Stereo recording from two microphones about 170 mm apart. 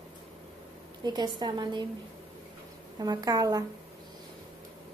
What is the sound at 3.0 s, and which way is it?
Speech, 20° right (ahead or behind).